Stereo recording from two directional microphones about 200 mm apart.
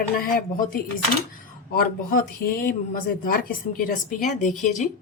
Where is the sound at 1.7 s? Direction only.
50° left (ahead or behind).